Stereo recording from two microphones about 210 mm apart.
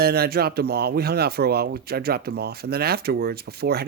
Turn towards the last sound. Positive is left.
turn(degrees=-50)  # may be behind; listen again after turning